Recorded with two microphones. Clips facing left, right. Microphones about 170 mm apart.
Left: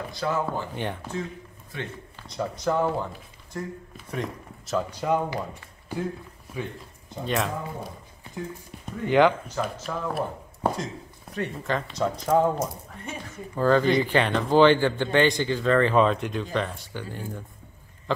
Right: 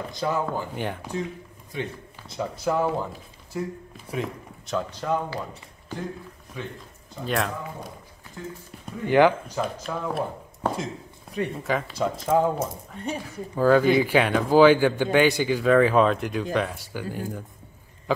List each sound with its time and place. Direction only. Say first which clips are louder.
0.1 s speech: right 1 dB; 20° right (ahead or behind)
0.7 s a man's voice: right 1 dB; 10° right (ahead or behind)
2.2 s a man's voice: even; 5° right (ahead or behind)
6.5 s speech: left 2 dB; 10° left (ahead or behind)
8.8 s speech: right 1 dB; centre (ahead or behind)
11.3 s speech: right 2 dB; 10° right (ahead or behind)
12.5 s speech: right 1 dB; 35° right (ahead or behind)
13.6 s a man's voice: right 2 dB; 5° right (ahead or behind)